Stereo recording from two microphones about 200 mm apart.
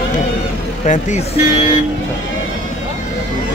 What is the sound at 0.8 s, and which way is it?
Speech, 35° left (ahead or behind).